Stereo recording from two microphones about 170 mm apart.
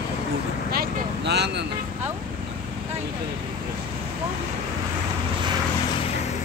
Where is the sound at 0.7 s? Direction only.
70° right (ahead or behind).